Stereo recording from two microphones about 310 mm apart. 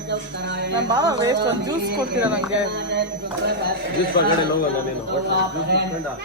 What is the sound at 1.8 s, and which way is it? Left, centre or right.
Speech, right.